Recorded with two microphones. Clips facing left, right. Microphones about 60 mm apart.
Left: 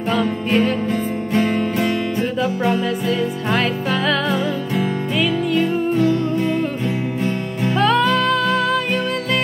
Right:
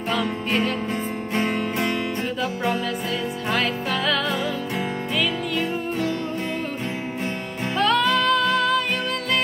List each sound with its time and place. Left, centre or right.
0.1 s music: left
2.6 s music: left
3.5 s music: centre
4.0 s music: left
7.7 s music: left